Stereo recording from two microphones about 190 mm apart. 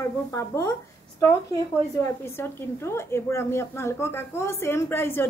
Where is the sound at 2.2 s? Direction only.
15° left (ahead or behind).